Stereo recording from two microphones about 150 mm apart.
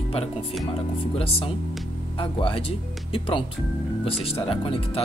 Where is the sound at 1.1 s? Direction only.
40° left (ahead or behind).